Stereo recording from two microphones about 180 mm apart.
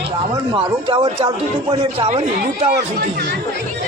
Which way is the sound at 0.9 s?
30° right (ahead or behind).